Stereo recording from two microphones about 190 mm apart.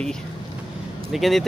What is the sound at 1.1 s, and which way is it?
Speech, centre (ahead or behind).